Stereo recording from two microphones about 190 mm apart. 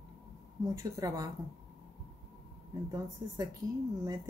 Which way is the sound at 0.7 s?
15° right (ahead or behind).